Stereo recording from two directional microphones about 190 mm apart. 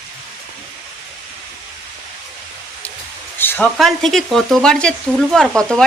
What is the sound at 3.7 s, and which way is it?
Speech, centre (ahead or behind).